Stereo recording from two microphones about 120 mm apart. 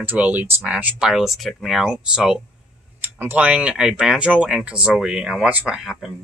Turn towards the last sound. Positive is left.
turn(degrees=-5)  # may be behind; listen again after turning